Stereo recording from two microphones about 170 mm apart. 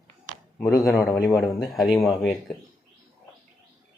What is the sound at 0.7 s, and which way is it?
Speech, 20° left (ahead or behind).